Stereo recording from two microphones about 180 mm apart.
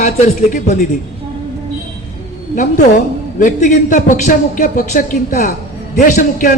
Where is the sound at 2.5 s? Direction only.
45° left (ahead or behind).